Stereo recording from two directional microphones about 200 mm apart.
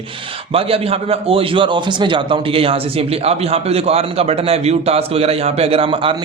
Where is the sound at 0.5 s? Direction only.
30° right (ahead or behind).